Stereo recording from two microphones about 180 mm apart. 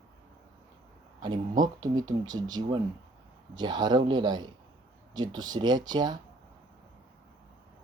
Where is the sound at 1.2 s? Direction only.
25° right (ahead or behind).